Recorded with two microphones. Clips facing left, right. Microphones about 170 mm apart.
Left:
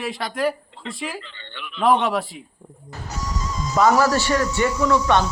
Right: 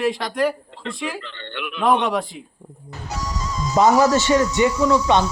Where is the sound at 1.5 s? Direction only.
65° right (ahead or behind).